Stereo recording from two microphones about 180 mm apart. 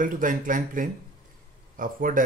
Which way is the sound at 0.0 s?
50° right (ahead or behind).